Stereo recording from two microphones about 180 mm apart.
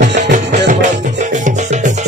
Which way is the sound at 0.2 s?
40° right (ahead or behind).